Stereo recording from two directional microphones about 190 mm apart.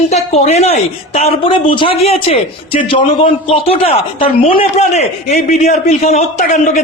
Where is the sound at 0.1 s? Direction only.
35° left (ahead or behind).